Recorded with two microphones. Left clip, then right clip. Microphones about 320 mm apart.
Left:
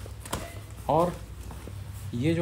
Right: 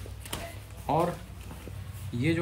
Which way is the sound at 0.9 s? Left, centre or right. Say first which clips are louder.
Left 3 dB; centre.